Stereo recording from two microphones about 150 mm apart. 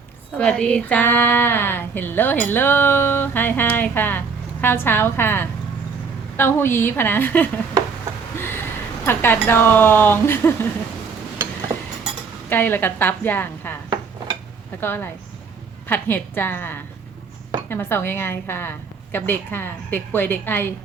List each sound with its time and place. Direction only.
0.3 s a woman's voice: 5° left (ahead or behind)
8.4 s a sound: 15° left (ahead or behind)
9.0 s a woman's voice: 15° left (ahead or behind)
12.5 s a woman's voice: 15° left (ahead or behind)
14.8 s a woman's voice: 15° left (ahead or behind)